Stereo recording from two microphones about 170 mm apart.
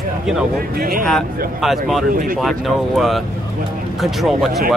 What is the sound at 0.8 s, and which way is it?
Speech, 60° right (ahead or behind).